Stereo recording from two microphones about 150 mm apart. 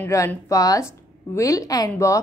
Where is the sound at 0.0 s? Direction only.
15° left (ahead or behind).